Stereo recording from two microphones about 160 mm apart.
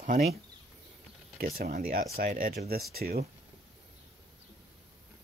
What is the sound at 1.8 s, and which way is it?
Speech, 65° right (ahead or behind).